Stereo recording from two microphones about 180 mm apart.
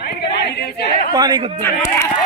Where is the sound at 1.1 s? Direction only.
25° right (ahead or behind).